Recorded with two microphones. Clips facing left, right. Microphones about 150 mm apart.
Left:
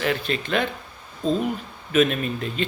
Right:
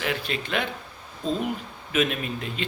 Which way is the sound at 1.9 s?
10° right (ahead or behind).